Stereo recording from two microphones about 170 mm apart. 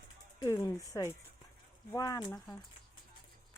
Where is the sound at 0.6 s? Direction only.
20° left (ahead or behind).